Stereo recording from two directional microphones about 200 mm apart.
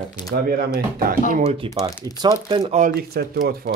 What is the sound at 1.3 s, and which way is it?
Speech, 30° right (ahead or behind).